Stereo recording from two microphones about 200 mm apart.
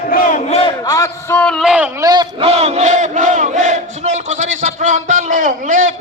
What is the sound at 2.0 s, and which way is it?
Battle cry, 20° right (ahead or behind).